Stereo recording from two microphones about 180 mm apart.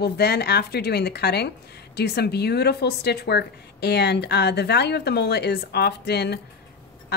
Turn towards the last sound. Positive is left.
turn(degrees=65)  # may be behind; listen again after turning